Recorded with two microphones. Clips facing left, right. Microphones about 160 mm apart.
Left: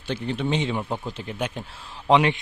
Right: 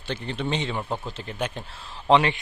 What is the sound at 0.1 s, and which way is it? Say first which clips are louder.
A man's voice: left 3 dB; 10° left (ahead or behind).